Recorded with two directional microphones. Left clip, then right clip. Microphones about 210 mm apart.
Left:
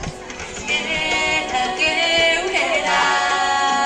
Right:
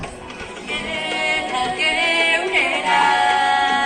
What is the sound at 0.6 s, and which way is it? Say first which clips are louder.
Music: left 4 dB; 15° left (ahead or behind).